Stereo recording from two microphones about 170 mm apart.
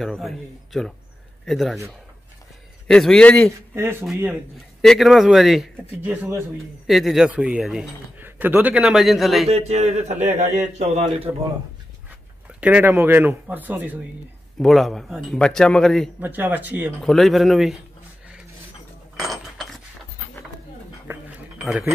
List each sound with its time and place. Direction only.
0.0 s speech: centre (ahead or behind)
2.9 s speech: 5° left (ahead or behind)
3.7 s speech: 15° right (ahead or behind)
4.8 s speech: centre (ahead or behind)
6.9 s speech: centre (ahead or behind)
9.5 s a man's voice: 40° right (ahead or behind)
12.5 s speech: 10° right (ahead or behind)
14.6 s speech: centre (ahead or behind)
16.2 s speech: 10° right (ahead or behind)
17.0 s speech: centre (ahead or behind)
19.1 s a sound: centre (ahead or behind)
21.6 s speech: 5° right (ahead or behind)